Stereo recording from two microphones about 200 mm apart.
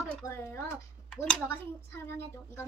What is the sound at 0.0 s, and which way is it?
Speech, 10° left (ahead or behind).